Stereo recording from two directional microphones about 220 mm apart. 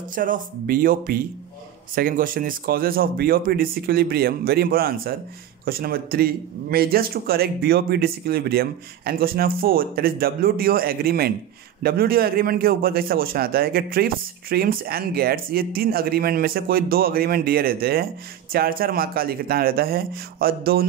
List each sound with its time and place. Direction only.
0.1 s a man's voice: 40° right (ahead or behind)